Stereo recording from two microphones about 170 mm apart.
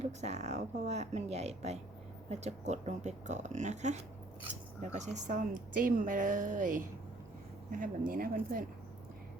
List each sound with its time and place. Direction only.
0.0 s a woman's voice: 40° right (ahead or behind)